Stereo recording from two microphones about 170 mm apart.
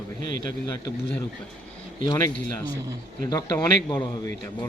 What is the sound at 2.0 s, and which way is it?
Speech, 20° left (ahead or behind).